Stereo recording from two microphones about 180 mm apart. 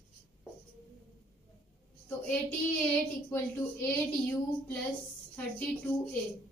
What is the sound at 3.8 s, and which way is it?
Speech, 10° left (ahead or behind).